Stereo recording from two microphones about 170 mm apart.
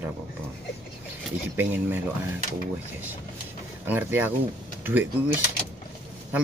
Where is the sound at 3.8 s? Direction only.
10° right (ahead or behind).